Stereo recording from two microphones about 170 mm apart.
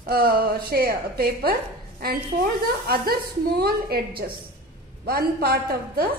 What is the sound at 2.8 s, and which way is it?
A woman's voice, 60° right (ahead or behind).